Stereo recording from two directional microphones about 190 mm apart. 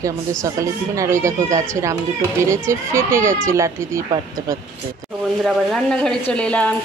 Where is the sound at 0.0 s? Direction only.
15° right (ahead or behind).